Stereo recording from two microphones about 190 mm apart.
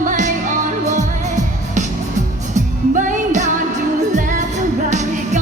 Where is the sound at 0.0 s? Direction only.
40° right (ahead or behind).